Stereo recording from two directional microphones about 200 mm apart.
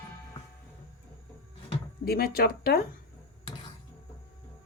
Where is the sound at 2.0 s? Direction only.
50° left (ahead or behind).